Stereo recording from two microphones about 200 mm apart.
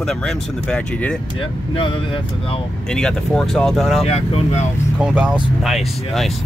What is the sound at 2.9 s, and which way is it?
Speech, 5° left (ahead or behind).